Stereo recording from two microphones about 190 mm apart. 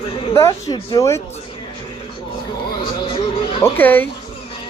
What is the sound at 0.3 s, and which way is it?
Speech, 15° left (ahead or behind).